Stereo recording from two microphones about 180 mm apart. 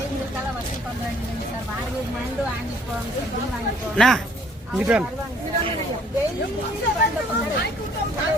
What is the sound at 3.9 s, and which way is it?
Speech, centre (ahead or behind).